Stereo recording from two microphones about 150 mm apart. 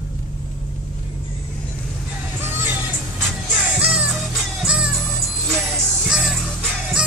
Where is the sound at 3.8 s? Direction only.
10° right (ahead or behind).